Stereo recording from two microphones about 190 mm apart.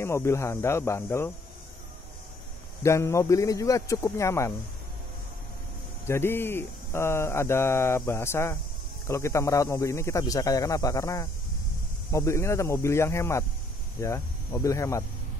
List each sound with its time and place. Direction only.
0.0 s speech: 15° left (ahead or behind)
2.8 s speech: 15° left (ahead or behind)
6.0 s speech: 10° left (ahead or behind)